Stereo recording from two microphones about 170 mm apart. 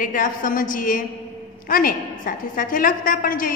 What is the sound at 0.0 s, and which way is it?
A woman's voice, 50° left (ahead or behind).